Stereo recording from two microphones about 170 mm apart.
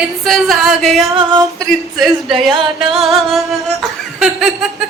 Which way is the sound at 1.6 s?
Centre (ahead or behind).